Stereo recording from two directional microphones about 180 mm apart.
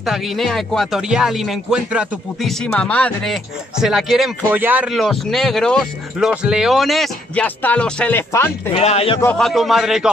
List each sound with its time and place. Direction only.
0.0 s speech: centre (ahead or behind)
2.6 s speech: 5° left (ahead or behind)
8.7 s speech: 35° left (ahead or behind)
9.2 s speech: 5° left (ahead or behind)